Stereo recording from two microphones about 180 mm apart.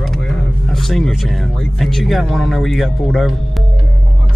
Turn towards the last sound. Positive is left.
turn(degrees=0)  # may be behind; listen again after turning